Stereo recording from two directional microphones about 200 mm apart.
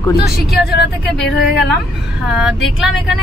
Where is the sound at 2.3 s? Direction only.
5° right (ahead or behind).